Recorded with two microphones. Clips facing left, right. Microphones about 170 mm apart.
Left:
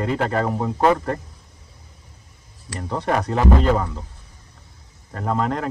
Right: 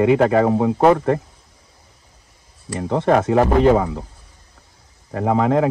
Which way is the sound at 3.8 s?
65° right (ahead or behind).